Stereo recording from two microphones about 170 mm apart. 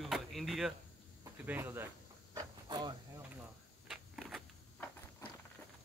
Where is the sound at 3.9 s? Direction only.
5° right (ahead or behind).